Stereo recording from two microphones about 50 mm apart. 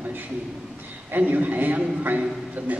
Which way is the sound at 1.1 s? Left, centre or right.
Right.